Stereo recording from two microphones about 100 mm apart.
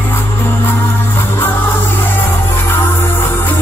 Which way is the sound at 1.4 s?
20° left (ahead or behind).